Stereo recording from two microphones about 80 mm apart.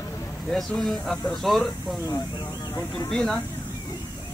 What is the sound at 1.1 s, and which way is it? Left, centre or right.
Speech, centre.